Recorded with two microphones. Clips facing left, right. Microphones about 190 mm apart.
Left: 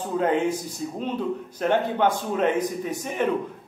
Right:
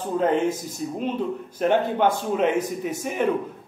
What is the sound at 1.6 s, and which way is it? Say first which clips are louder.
A man's voice: right 2 dB; 10° right (ahead or behind).